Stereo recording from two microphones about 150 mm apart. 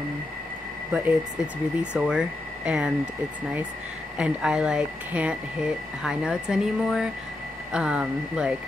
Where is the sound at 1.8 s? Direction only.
5° right (ahead or behind).